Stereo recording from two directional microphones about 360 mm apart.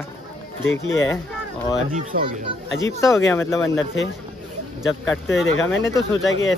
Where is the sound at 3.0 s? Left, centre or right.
Centre.